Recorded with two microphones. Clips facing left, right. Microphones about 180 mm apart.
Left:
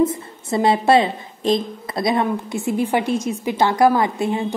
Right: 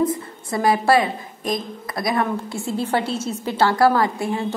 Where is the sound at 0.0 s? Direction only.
25° left (ahead or behind).